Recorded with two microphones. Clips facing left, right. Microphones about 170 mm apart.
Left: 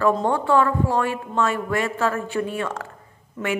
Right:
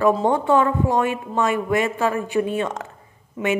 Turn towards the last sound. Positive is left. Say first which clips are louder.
# right 4 dB
turn(degrees=-10)  # may be behind; listen again after turning